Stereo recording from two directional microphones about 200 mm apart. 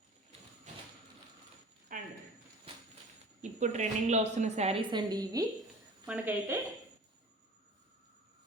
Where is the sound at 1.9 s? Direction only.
40° right (ahead or behind).